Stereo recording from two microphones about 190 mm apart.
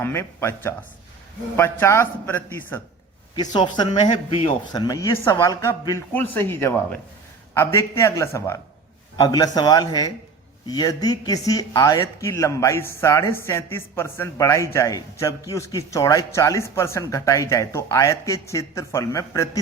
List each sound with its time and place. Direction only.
0.0 s speech: 15° left (ahead or behind)
3.3 s speech: 20° left (ahead or behind)